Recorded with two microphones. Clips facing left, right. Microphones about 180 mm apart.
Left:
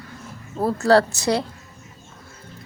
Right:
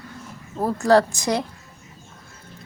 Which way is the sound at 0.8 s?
15° right (ahead or behind).